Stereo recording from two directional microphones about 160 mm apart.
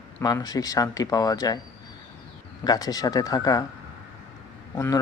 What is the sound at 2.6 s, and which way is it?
Speech, 25° left (ahead or behind).